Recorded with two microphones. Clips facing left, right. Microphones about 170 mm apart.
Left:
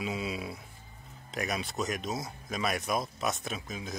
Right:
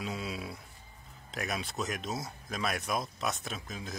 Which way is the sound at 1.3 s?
Centre (ahead or behind).